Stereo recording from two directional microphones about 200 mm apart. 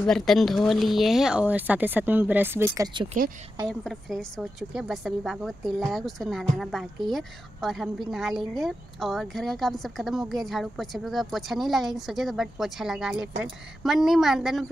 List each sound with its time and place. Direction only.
0.0 s speech: centre (ahead or behind)
2.9 s speech: 25° right (ahead or behind)
3.6 s a woman's voice: centre (ahead or behind)